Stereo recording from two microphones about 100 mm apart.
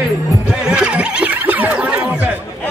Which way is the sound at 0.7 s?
10° right (ahead or behind).